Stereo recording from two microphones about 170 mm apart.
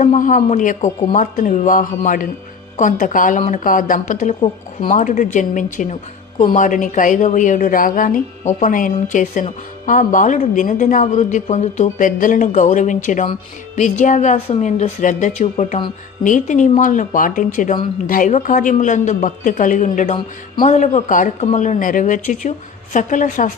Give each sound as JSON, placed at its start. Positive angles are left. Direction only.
{"t": 0.0, "sound": "a woman's voice", "side_deg": 45}
{"t": 11.9, "sound": "a woman's voice", "side_deg": 50}